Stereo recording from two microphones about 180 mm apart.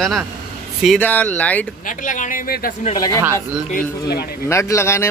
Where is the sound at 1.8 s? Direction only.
45° left (ahead or behind); by 4.3 s 60° left (ahead or behind).